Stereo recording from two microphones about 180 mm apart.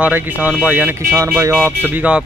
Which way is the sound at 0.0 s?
10° right (ahead or behind).